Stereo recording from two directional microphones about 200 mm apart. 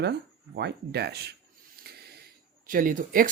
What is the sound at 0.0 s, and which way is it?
Speech, 55° right (ahead or behind).